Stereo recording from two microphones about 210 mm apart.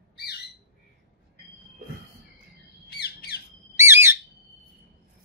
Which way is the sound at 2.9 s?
50° left (ahead or behind).